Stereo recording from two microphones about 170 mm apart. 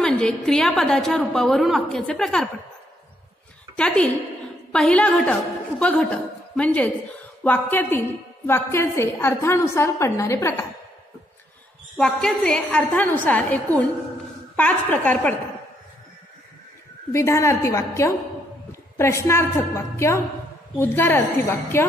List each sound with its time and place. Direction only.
0.0 s a woman's voice: 5° left (ahead or behind)
3.7 s a woman's voice: 5° left (ahead or behind)
12.0 s a woman's voice: 5° left (ahead or behind)
17.1 s a woman's voice: 15° left (ahead or behind)